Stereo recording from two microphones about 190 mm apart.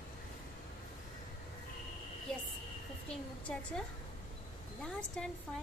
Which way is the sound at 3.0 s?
5° left (ahead or behind).